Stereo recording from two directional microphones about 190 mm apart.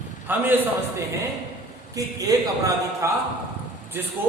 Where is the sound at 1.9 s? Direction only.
20° right (ahead or behind).